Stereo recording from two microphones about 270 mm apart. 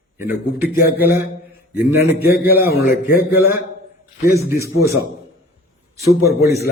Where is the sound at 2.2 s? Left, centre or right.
Left.